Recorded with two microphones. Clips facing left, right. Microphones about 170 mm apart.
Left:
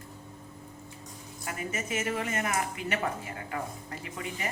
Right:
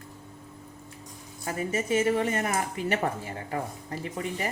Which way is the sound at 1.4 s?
30° right (ahead or behind).